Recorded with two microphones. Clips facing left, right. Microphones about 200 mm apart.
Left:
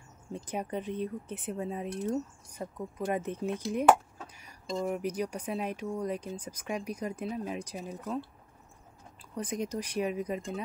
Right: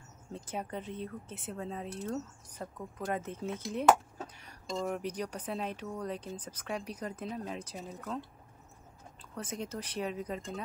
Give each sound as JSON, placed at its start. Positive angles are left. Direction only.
{"t": 0.3, "sound": "speech", "side_deg": 15}
{"t": 9.3, "sound": "speech", "side_deg": 15}